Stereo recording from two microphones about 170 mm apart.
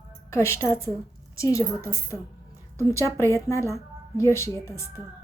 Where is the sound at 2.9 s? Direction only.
15° left (ahead or behind).